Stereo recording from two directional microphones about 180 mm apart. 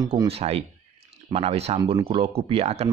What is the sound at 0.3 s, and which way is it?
Speech, 35° right (ahead or behind).